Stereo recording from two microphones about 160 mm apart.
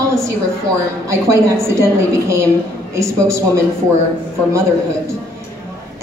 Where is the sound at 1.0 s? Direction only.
15° right (ahead or behind).